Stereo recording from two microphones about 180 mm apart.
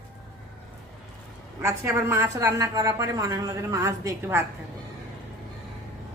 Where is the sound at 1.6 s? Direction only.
15° right (ahead or behind).